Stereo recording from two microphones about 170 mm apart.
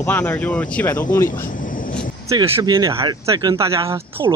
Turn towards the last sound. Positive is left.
turn(degrees=-15)  # may be behind; listen again after turning